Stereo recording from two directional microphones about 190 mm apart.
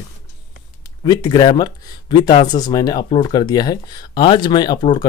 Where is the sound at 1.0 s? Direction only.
20° left (ahead or behind).